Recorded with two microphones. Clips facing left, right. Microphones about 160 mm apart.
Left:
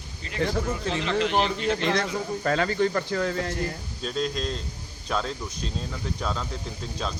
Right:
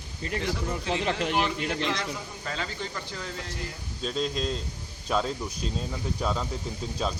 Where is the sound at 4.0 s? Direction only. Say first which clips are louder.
Even; centre (ahead or behind).